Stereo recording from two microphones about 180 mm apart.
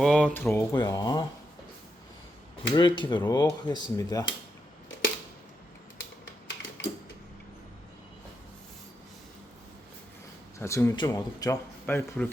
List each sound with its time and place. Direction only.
0.0 s speech: 5° left (ahead or behind)
0.7 s speech: 20° left (ahead or behind)
2.6 s speech: 25° left (ahead or behind)
6.0 s typing: 90° left
10.6 s speech: 15° left (ahead or behind)